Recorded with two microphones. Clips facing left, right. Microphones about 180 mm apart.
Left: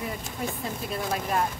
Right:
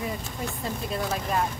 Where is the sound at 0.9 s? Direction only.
Centre (ahead or behind).